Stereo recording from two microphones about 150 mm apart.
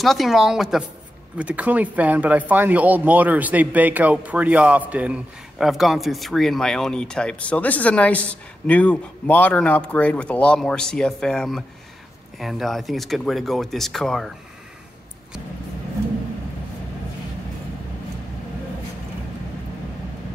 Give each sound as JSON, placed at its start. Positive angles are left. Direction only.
{"t": 0.0, "sound": "speech", "side_deg": 0}